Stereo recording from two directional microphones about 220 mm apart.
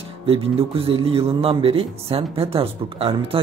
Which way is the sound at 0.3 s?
25° right (ahead or behind).